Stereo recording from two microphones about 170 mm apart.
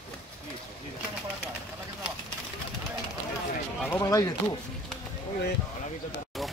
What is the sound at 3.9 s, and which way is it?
Speech, 20° left (ahead or behind).